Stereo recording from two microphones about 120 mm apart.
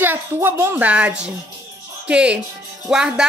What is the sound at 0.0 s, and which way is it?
Speech, 20° right (ahead or behind).